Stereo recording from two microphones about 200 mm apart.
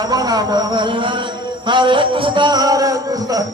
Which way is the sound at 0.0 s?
20° right (ahead or behind).